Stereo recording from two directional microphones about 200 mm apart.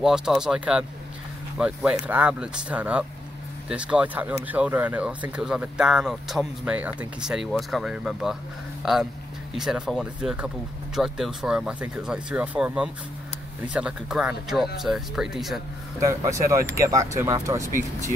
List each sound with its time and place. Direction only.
0.0 s speech: 5° right (ahead or behind)
9.6 s speech: centre (ahead or behind)
16.0 s speech: 15° right (ahead or behind)